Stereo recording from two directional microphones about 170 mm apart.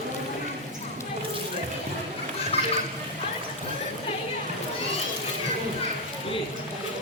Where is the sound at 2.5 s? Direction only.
35° left (ahead or behind).